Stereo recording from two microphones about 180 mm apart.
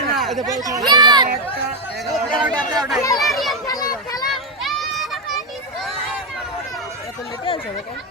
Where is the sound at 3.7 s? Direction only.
20° left (ahead or behind).